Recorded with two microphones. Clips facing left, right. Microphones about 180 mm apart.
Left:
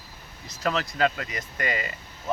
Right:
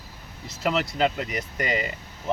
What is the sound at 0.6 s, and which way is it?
Speech, 20° right (ahead or behind).